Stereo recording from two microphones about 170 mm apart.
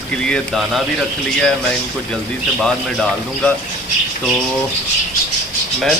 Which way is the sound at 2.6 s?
5° left (ahead or behind).